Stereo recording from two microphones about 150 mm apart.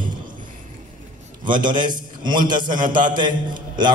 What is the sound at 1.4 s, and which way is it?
A man's voice, 30° right (ahead or behind).